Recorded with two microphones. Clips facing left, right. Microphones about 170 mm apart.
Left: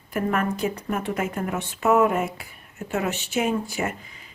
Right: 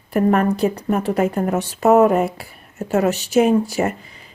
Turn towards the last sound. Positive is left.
turn(degrees=-40)  # may be behind; listen again after turning